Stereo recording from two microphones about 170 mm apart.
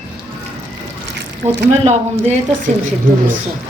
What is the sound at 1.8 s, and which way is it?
Speech, 40° right (ahead or behind).